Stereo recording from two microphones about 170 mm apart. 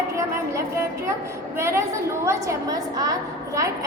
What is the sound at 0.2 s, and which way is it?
A woman's voice, 15° right (ahead or behind).